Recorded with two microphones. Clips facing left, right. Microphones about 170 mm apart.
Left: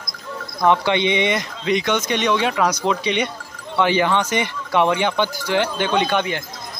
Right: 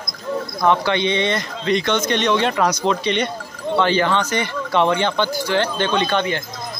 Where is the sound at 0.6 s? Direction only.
20° left (ahead or behind).